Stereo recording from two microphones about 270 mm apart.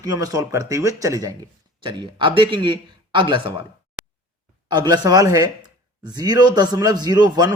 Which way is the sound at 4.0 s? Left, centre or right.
Centre.